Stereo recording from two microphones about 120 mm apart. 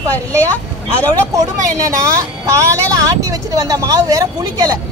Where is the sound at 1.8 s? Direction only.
25° right (ahead or behind).